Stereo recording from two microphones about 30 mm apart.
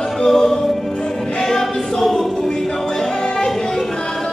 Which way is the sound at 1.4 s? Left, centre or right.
Centre.